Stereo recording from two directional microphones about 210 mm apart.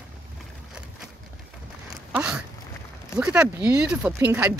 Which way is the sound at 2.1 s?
5° right (ahead or behind).